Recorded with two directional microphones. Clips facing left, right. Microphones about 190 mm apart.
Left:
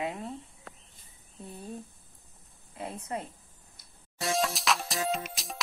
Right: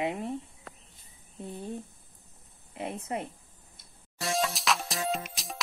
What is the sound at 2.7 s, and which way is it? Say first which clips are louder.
Speech: right 2 dB; 25° right (ahead or behind).